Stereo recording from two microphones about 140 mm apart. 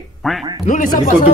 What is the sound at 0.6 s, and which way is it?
Speech, 65° left (ahead or behind).